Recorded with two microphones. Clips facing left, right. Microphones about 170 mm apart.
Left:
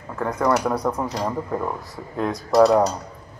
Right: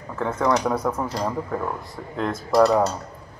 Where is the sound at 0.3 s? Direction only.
10° left (ahead or behind).